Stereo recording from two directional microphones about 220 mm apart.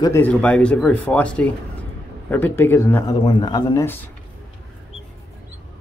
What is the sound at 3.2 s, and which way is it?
Speech, 25° left (ahead or behind).